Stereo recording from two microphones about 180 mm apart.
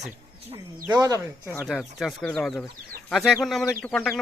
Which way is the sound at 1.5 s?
Centre (ahead or behind).